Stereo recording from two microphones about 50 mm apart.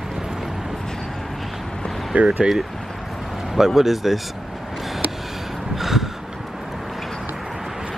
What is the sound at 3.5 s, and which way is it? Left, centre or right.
Speech, centre.